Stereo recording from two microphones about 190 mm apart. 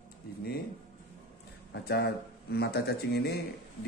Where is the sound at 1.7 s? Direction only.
60° left (ahead or behind).